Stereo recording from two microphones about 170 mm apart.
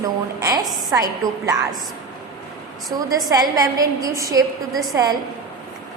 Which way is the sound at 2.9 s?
20° right (ahead or behind).